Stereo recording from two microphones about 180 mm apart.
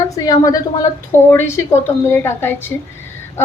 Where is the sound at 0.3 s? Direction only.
20° left (ahead or behind).